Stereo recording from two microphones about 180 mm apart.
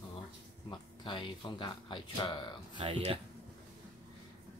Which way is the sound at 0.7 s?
25° left (ahead or behind).